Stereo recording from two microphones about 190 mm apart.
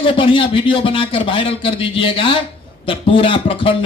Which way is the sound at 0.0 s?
25° left (ahead or behind).